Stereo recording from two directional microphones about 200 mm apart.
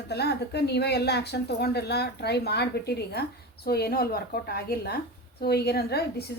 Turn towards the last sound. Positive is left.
turn(degrees=55)  # may be behind; listen again after turning